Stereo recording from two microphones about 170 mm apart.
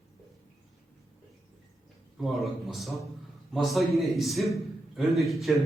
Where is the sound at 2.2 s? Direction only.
Centre (ahead or behind).